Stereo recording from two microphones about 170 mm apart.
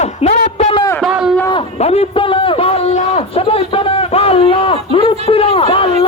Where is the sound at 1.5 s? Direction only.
35° left (ahead or behind).